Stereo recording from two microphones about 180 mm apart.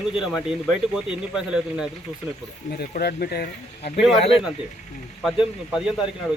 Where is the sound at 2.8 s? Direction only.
60° left (ahead or behind).